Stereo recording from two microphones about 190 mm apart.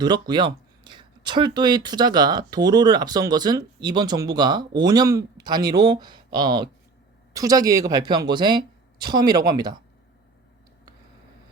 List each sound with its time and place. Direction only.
0.0 s speech: 20° right (ahead or behind)